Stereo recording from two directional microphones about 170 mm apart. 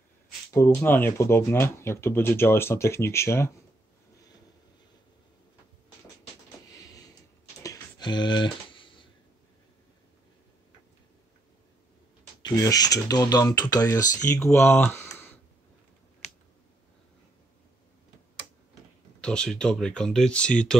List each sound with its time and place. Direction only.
0.5 s speech: 15° left (ahead or behind)
6.7 s a sound: 20° left (ahead or behind)
7.6 s typing: 20° left (ahead or behind)
12.4 s speech: 20° left (ahead or behind)
19.2 s speech: 5° left (ahead or behind)